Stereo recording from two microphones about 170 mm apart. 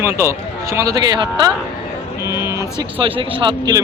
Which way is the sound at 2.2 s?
15° right (ahead or behind).